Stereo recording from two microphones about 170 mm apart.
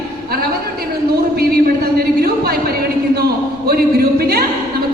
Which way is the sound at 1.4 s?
60° right (ahead or behind).